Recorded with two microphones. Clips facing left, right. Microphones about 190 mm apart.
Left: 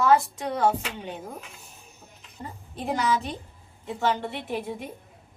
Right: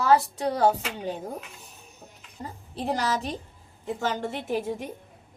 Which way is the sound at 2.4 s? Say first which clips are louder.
Right 2 dB; 40° right (ahead or behind).